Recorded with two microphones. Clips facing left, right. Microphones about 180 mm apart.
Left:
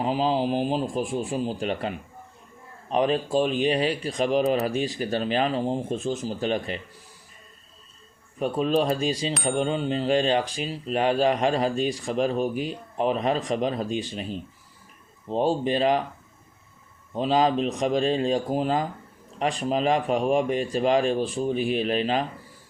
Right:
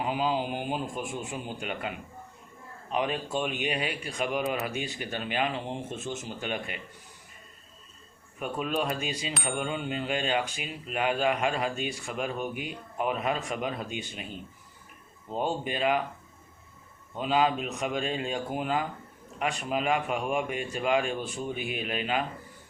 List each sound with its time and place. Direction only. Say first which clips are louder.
0.0 s speech: left 5 dB; 30° left (ahead or behind)
8.4 s speech: left 7 dB; 35° left (ahead or behind)
17.2 s speech: left 5 dB; 35° left (ahead or behind)